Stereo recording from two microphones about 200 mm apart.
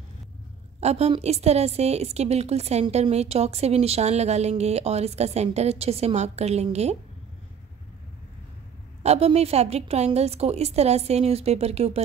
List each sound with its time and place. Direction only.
0.7 s a woman's voice: 30° right (ahead or behind)
9.0 s a woman's voice: 30° right (ahead or behind)